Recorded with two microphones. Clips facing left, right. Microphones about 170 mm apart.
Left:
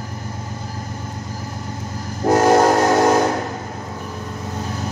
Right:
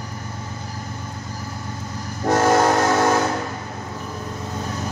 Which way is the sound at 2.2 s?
10° left (ahead or behind).